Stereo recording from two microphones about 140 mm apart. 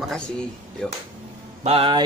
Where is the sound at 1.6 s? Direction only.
45° right (ahead or behind).